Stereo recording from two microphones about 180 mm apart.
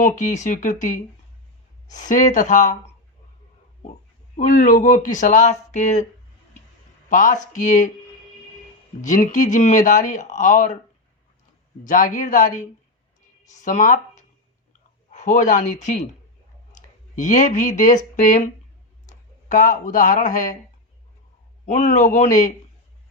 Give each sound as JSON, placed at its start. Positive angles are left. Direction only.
{"t": 0.0, "sound": "speech", "side_deg": 45}
{"t": 4.4, "sound": "speech", "side_deg": 45}
{"t": 7.1, "sound": "speech", "side_deg": 45}
{"t": 9.0, "sound": "speech", "side_deg": 45}
{"t": 11.9, "sound": "speech", "side_deg": 45}
{"t": 17.2, "sound": "speech", "side_deg": 45}
{"t": 21.7, "sound": "speech", "side_deg": 40}